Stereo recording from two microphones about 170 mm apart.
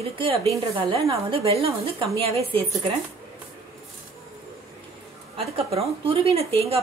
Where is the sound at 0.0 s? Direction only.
35° right (ahead or behind).